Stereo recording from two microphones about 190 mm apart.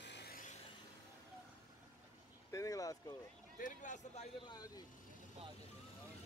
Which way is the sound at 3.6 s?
40° left (ahead or behind).